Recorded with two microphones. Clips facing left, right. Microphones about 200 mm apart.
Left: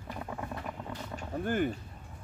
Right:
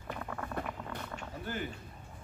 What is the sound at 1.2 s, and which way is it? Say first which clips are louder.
Speech: left 11 dB; 55° left (ahead or behind).